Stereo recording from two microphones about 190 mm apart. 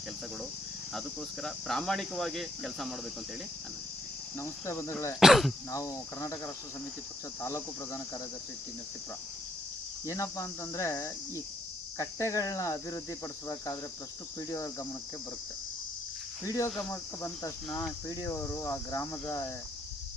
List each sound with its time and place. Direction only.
0.9 s cricket: centre (ahead or behind)
4.4 s cricket: 15° left (ahead or behind)
5.2 s cricket: centre (ahead or behind)
5.7 s cricket: 15° left (ahead or behind)
10.1 s cricket: 15° left (ahead or behind)
16.4 s cricket: 15° left (ahead or behind)